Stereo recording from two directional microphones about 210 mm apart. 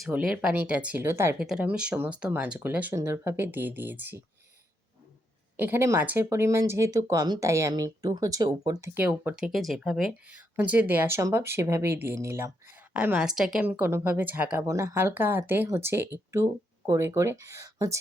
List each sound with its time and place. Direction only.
0.0 s speech: 5° right (ahead or behind)
5.5 s speech: 10° right (ahead or behind)
9.0 s speech: 5° right (ahead or behind)